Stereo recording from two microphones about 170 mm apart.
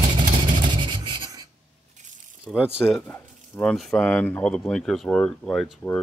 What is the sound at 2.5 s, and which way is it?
Speech, 10° left (ahead or behind).